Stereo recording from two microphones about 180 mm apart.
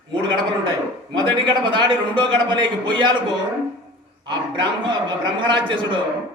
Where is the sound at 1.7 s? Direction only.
25° right (ahead or behind).